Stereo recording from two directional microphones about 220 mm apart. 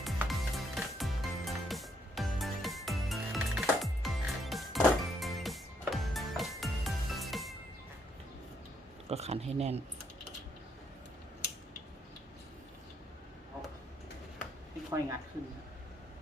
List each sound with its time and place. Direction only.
0.0 s music: centre (ahead or behind)
9.0 s speech: 30° right (ahead or behind)